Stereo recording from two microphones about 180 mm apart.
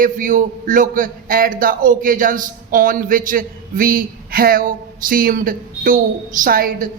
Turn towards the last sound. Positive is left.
turn(degrees=-50)  # may be behind; listen again after turning